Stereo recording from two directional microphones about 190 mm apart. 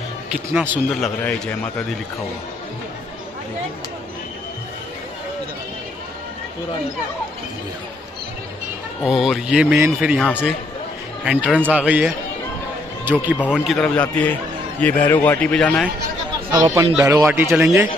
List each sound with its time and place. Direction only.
0.3 s speech: 5° right (ahead or behind)
1.0 s speech: 5° left (ahead or behind)
9.0 s speech: centre (ahead or behind)
11.7 s speech: 5° right (ahead or behind)
13.5 s a man's voice: centre (ahead or behind)
16.5 s speech: 15° right (ahead or behind)